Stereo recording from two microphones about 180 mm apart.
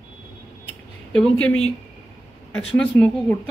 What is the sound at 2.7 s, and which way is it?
Speech, 5° left (ahead or behind).